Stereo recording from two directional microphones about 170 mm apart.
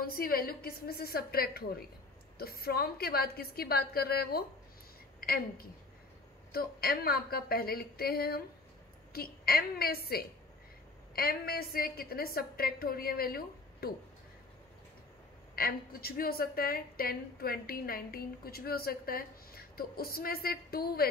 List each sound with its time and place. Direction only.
0.0 s a woman's voice: 60° left (ahead or behind)
15.5 s a woman's voice: 60° left (ahead or behind)